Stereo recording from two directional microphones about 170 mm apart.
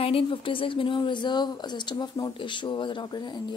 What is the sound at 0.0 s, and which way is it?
Speech, 30° left (ahead or behind).